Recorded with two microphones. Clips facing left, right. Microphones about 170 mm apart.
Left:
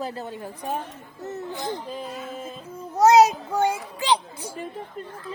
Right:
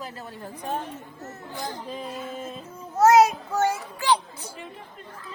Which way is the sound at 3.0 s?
20° left (ahead or behind).